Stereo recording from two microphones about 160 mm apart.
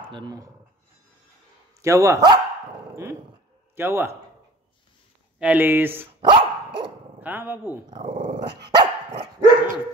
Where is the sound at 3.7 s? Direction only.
15° right (ahead or behind).